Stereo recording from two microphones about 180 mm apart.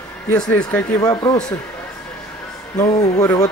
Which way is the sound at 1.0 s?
20° left (ahead or behind).